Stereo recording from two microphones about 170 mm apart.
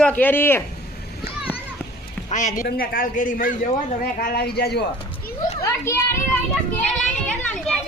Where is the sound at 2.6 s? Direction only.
60° left (ahead or behind).